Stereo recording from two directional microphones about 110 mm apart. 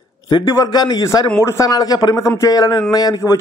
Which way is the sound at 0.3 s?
40° left (ahead or behind).